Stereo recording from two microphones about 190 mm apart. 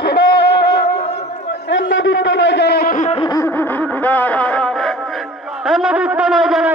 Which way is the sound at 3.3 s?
10° left (ahead or behind).